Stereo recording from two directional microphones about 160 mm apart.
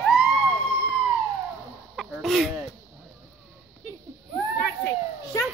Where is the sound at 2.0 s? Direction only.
Centre (ahead or behind).